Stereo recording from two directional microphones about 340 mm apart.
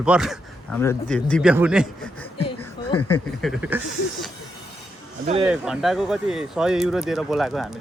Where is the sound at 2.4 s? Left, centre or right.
Centre.